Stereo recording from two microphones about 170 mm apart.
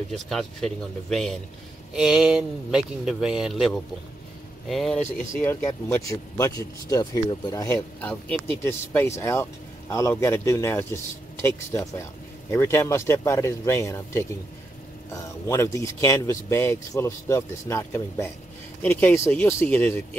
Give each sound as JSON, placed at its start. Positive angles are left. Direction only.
{"t": 0.1, "sound": "speech", "side_deg": 0}
{"t": 5.4, "sound": "speech", "side_deg": 15}
{"t": 7.6, "sound": "speech", "side_deg": 10}
{"t": 15.4, "sound": "speech", "side_deg": 15}